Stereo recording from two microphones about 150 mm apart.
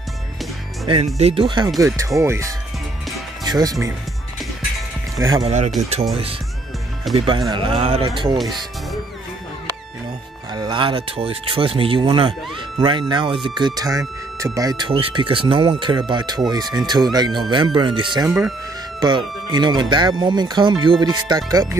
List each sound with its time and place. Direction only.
0.8 s speech: 40° right (ahead or behind)
1.8 s speech: 20° right (ahead or behind)
5.1 s speech: 25° right (ahead or behind)
5.4 s speech: 50° right (ahead or behind)
7.2 s speech: 35° right (ahead or behind)
10.5 s speech: 30° right (ahead or behind)
14.9 s speech: 35° right (ahead or behind)